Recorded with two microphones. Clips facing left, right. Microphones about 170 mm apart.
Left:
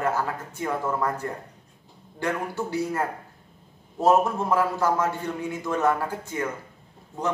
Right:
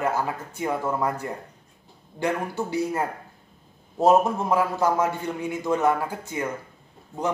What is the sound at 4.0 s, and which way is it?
A man's voice, 15° right (ahead or behind).